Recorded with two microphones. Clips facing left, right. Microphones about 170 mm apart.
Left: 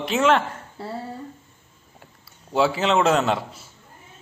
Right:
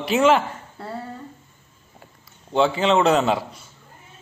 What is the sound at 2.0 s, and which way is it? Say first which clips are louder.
A man's voice: right 1 dB; 5° left (ahead or behind).